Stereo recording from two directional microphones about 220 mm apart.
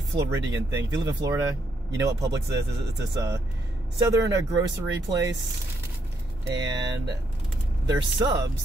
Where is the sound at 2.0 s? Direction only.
15° right (ahead or behind).